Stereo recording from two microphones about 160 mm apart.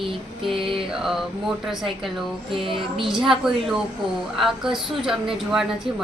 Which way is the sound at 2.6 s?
30° right (ahead or behind).